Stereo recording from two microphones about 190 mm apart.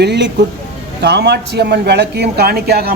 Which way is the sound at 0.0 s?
65° right (ahead or behind).